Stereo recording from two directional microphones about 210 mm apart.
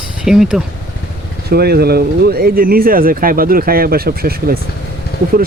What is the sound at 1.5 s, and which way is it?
Speech, 50° right (ahead or behind).